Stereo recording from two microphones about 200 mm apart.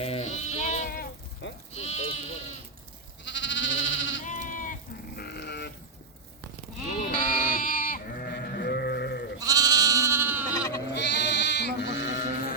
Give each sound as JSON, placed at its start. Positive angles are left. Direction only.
{"t": 0.0, "sound": "goat", "side_deg": 30}
{"t": 1.7, "sound": "sheep", "side_deg": 30}
{"t": 3.2, "sound": "sheep", "side_deg": 65}
{"t": 4.3, "sound": "sheep", "side_deg": 40}
{"t": 7.0, "sound": "sheep", "side_deg": 45}
{"t": 9.4, "sound": "goat", "side_deg": -20}
{"t": 10.5, "sound": "sheep", "side_deg": 15}
{"t": 10.9, "sound": "sheep", "side_deg": 60}
{"t": 12.1, "sound": "music", "side_deg": 45}